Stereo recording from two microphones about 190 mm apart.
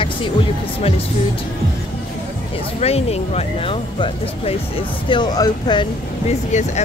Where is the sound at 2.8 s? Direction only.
35° left (ahead or behind).